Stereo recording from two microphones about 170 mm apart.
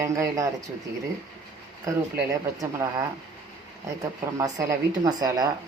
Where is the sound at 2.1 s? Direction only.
15° right (ahead or behind).